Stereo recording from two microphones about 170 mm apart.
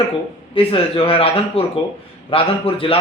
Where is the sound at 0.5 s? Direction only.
35° left (ahead or behind).